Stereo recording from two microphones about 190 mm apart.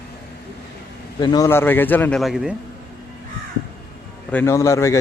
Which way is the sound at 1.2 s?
20° left (ahead or behind).